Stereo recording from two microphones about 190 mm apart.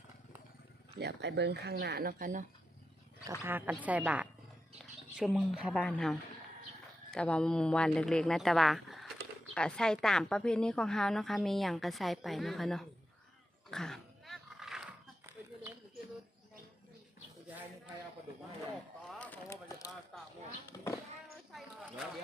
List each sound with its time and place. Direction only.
0.9 s speech: 60° right (ahead or behind); by 2.4 s 45° right (ahead or behind)
3.4 s a woman's voice: 10° right (ahead or behind)
13.7 s dog: 5° left (ahead or behind)
19.2 s a sound: 10° left (ahead or behind)
20.7 s speech: 15° left (ahead or behind)
21.5 s a sound: 5° right (ahead or behind)